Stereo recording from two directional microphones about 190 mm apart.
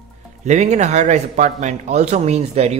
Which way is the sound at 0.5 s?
35° right (ahead or behind).